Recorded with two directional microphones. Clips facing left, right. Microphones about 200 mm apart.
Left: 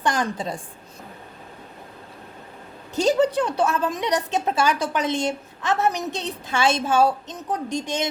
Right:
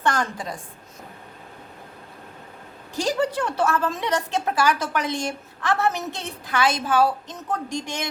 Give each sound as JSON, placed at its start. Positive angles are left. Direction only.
{"t": 0.0, "sound": "a woman's voice", "side_deg": 15}
{"t": 2.9, "sound": "a woman's voice", "side_deg": 20}